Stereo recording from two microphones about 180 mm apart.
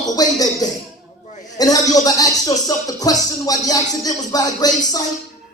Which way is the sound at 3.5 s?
20° left (ahead or behind).